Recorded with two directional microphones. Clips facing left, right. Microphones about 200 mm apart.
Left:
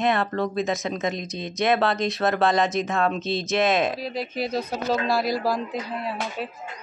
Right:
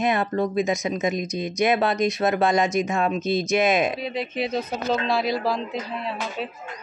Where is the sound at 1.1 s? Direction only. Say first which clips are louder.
Right 5 dB; 25° left (ahead or behind).